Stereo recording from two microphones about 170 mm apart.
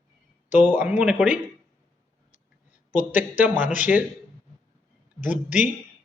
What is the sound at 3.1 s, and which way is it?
Speech, 10° right (ahead or behind).